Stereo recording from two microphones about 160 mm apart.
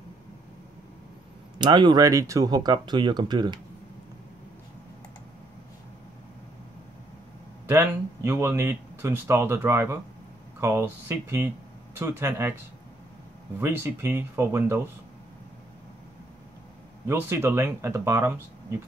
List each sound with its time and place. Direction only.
1.6 s speech: 30° right (ahead or behind)
7.6 s speech: 15° right (ahead or behind)
13.6 s speech: 15° right (ahead or behind)
17.1 s speech: 15° right (ahead or behind)